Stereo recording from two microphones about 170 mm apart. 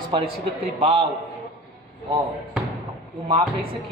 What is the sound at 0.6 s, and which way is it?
Speech, 35° right (ahead or behind).